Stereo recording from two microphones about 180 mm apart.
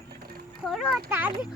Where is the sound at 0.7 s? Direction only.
Centre (ahead or behind).